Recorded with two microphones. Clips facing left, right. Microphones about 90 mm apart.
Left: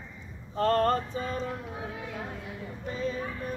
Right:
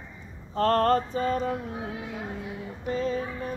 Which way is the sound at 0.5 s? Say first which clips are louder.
Right 3 dB; 50° right (ahead or behind).